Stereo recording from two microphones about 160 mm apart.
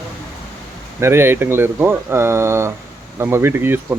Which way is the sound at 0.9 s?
15° right (ahead or behind).